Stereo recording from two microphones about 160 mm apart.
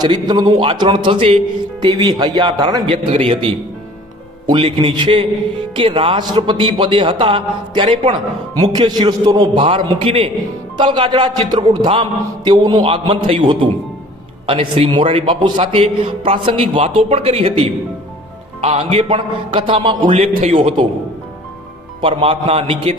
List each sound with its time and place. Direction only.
0.0 s a man's voice: 25° right (ahead or behind)
9.6 s a man's voice: 35° right (ahead or behind)
22.0 s a man's voice: 35° right (ahead or behind)